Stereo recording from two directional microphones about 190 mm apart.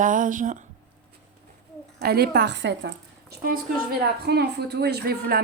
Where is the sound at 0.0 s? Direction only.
45° right (ahead or behind).